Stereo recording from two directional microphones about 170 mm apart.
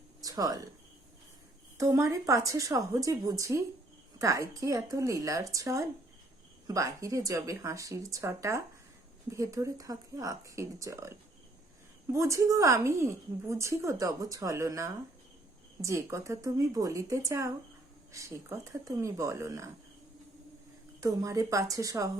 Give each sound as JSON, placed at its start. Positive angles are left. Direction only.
{"t": 0.2, "sound": "a sound", "side_deg": -20}
{"t": 1.8, "sound": "speech", "side_deg": -20}
{"t": 12.1, "sound": "speech", "side_deg": -15}
{"t": 21.0, "sound": "speech", "side_deg": -20}